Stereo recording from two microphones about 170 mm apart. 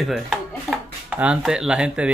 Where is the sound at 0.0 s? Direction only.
Centre (ahead or behind).